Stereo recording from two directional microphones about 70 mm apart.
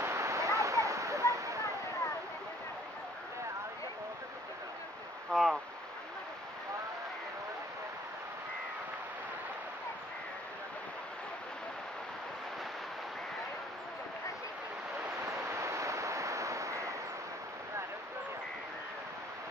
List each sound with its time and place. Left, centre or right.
0.0 s waterfall: right
5.3 s stream: centre
15.2 s a sound: right